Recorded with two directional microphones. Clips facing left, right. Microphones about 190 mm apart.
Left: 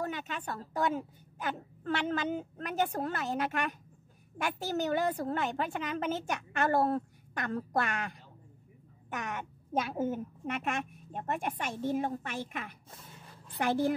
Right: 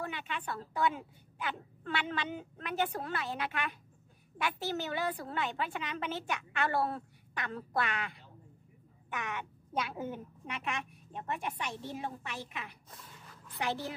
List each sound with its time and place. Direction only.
0.0 s a woman's voice: 40° left (ahead or behind)
12.9 s a sound: 30° left (ahead or behind)
13.6 s a woman's voice: 50° left (ahead or behind)